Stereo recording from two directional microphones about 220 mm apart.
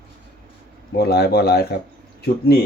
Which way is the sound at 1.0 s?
45° left (ahead or behind).